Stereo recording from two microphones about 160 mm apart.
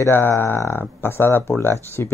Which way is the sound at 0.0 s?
15° left (ahead or behind).